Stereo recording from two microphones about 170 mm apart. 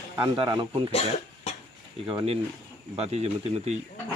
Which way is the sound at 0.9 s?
40° left (ahead or behind).